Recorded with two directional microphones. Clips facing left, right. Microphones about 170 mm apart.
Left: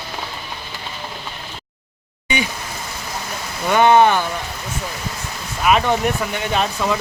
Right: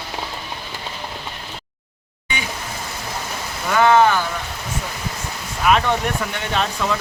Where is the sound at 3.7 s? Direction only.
20° left (ahead or behind).